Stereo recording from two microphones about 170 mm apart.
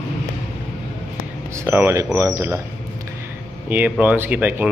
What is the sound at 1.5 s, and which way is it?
Speech, 15° right (ahead or behind).